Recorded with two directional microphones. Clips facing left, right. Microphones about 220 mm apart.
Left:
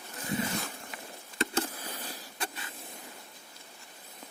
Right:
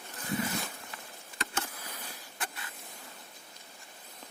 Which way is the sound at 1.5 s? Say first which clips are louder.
Left 6 dB; 30° left (ahead or behind).